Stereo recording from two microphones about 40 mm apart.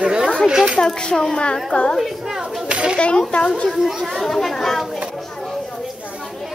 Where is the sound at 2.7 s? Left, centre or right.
Right.